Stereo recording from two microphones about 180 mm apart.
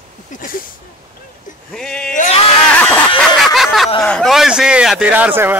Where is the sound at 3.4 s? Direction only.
Centre (ahead or behind).